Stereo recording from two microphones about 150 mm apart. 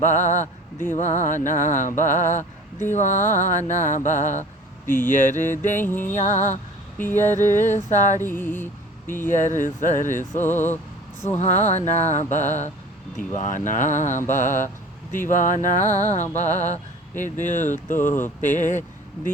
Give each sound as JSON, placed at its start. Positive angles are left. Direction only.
{"t": 0.0, "sound": "speech", "side_deg": 55}
{"t": 4.9, "sound": "music", "side_deg": 15}
{"t": 5.1, "sound": "speech", "side_deg": 60}
{"t": 5.7, "sound": "music", "side_deg": 15}
{"t": 6.1, "sound": "a sound", "side_deg": 50}
{"t": 7.0, "sound": "music", "side_deg": 15}
{"t": 7.5, "sound": "a sound", "side_deg": 55}
{"t": 8.3, "sound": "a sound", "side_deg": 15}
{"t": 9.3, "sound": "speech", "side_deg": 55}
{"t": 10.3, "sound": "music", "side_deg": 15}
{"t": 11.3, "sound": "a sound", "side_deg": 50}
{"t": 13.1, "sound": "speech", "side_deg": 55}